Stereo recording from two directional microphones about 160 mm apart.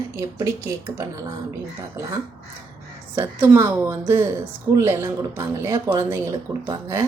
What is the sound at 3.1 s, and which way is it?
Speech, 15° right (ahead or behind).